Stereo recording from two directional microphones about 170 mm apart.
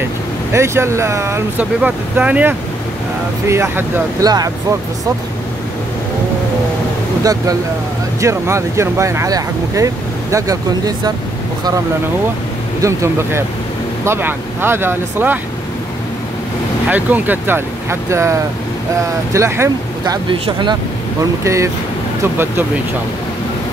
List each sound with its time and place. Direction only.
0.5 s speech: 15° right (ahead or behind)
8.2 s speech: 15° right (ahead or behind)
12.8 s speech: 15° right (ahead or behind)
16.9 s speech: 10° right (ahead or behind)
19.3 s speech: 15° right (ahead or behind)
20.2 s speech: 30° right (ahead or behind)
21.2 s speech: 20° right (ahead or behind)